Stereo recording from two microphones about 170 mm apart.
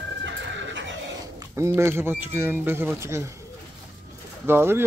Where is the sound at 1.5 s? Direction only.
15° right (ahead or behind).